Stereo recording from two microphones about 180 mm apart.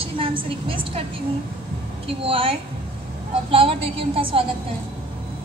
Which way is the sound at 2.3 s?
30° right (ahead or behind).